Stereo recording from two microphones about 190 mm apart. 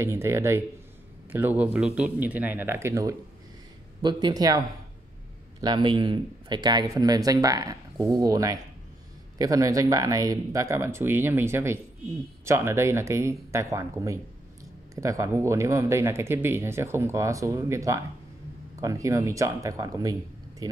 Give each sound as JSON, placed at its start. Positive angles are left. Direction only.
{"t": 0.0, "sound": "speech", "side_deg": -15}